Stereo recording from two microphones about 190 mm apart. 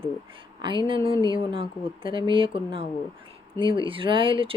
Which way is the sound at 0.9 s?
25° right (ahead or behind).